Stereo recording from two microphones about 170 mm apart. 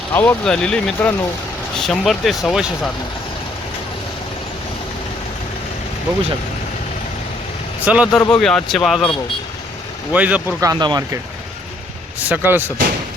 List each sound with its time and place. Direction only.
0.1 s speech: 10° left (ahead or behind)
7.9 s speech: 5° right (ahead or behind)
10.1 s speech: 10° right (ahead or behind)
10.6 s speech: 25° right (ahead or behind)
12.2 s speech: 10° right (ahead or behind)